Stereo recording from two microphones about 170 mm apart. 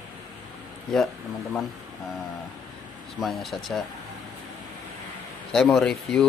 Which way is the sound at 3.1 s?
Centre (ahead or behind).